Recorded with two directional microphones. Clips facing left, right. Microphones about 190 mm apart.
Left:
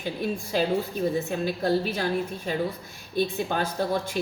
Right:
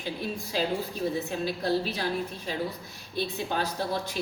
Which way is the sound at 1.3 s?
50° left (ahead or behind).